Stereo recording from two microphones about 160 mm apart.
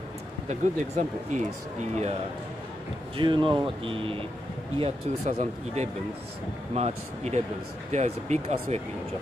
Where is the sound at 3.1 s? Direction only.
30° right (ahead or behind).